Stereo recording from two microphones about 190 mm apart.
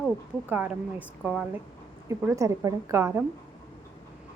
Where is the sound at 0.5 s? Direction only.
5° right (ahead or behind).